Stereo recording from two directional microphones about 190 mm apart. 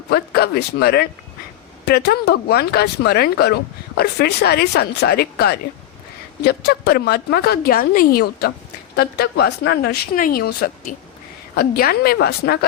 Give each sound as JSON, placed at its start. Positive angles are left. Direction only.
{"t": 0.1, "sound": "a woman's voice", "side_deg": 55}